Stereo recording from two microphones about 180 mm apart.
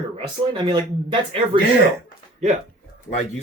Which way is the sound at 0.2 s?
25° right (ahead or behind).